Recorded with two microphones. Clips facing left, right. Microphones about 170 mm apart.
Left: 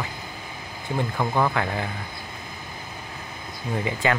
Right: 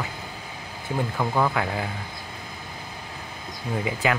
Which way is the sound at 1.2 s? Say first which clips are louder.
Even; 5° right (ahead or behind).